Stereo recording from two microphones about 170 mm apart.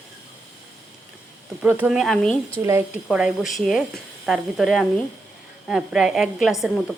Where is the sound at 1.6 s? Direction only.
10° right (ahead or behind); by 2.5 s 5° left (ahead or behind).